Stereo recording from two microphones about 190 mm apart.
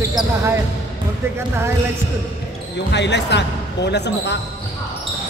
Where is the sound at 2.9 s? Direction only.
65° left (ahead or behind).